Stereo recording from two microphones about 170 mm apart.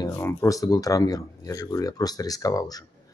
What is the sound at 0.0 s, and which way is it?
Speech, 15° left (ahead or behind).